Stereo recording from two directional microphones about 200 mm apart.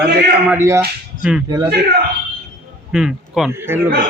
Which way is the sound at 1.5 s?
20° right (ahead or behind).